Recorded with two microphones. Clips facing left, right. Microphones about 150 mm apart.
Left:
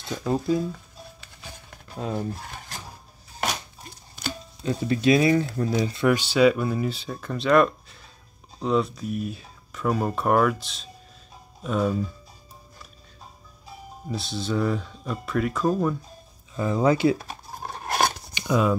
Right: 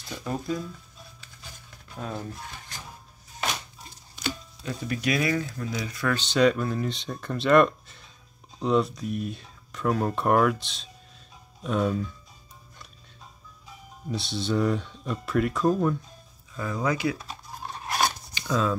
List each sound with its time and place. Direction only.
0.2 s speech: 30° left (ahead or behind)
1.2 s patter: 60° left (ahead or behind)
2.0 s speech: 25° left (ahead or behind)
4.6 s speech: 25° left (ahead or behind)
6.0 s speech: 10° left (ahead or behind)
14.0 s speech: centre (ahead or behind)
16.5 s speech: 25° left (ahead or behind)
17.2 s a sound: 50° left (ahead or behind)
18.3 s a sound: 15° left (ahead or behind)